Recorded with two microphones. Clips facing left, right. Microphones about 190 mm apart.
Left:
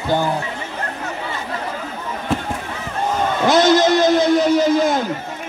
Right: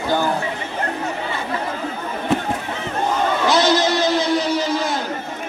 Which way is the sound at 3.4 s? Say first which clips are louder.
Left 5 dB; 50° left (ahead or behind).